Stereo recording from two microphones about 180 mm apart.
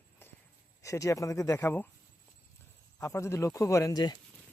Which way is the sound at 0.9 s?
15° left (ahead or behind).